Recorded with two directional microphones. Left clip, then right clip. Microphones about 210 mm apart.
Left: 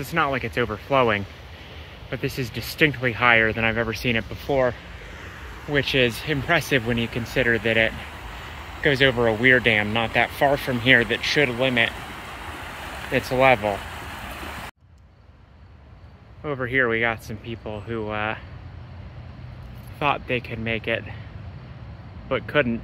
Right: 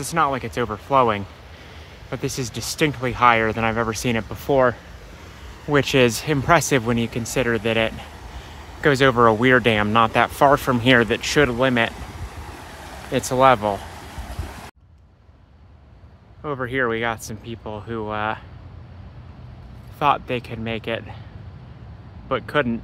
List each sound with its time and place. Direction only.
0.0 s speech: 15° right (ahead or behind)
4.5 s speech: 40° right (ahead or behind)
5.1 s vehicle: 40° right (ahead or behind)
6.5 s speech: 30° right (ahead or behind)
8.8 s speech: 35° right (ahead or behind)
13.3 s speech: 25° right (ahead or behind)
14.2 s a sound: centre (ahead or behind)
16.4 s speech: 15° right (ahead or behind)
20.0 s speech: 15° right (ahead or behind)
22.3 s speech: 15° right (ahead or behind)